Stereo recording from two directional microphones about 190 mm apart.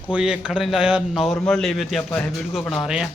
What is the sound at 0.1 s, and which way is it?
A man's voice, 5° right (ahead or behind).